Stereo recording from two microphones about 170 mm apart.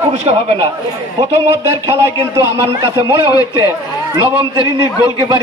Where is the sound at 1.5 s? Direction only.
15° right (ahead or behind).